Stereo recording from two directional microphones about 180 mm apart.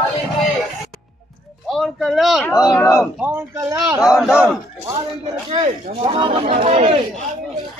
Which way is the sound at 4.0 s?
5° right (ahead or behind).